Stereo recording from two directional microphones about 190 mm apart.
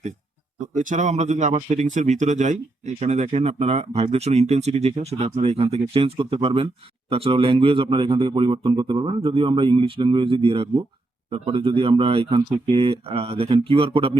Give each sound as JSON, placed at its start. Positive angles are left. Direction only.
{"t": 0.8, "sound": "a man's voice", "side_deg": -40}